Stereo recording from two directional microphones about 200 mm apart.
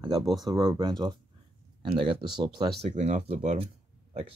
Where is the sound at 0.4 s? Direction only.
20° right (ahead or behind).